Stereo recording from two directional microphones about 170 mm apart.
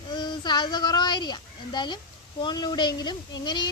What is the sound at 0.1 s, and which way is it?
A child's voice, 25° left (ahead or behind).